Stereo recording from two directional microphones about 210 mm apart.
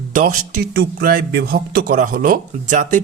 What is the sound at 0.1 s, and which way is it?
Speech, 40° right (ahead or behind).